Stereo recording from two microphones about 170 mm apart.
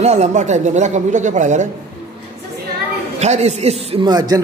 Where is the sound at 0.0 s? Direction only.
40° right (ahead or behind).